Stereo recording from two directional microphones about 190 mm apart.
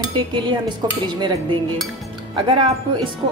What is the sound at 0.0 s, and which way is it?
Speech, 25° right (ahead or behind).